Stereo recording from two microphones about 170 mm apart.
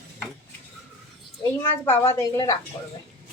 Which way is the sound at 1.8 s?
15° left (ahead or behind).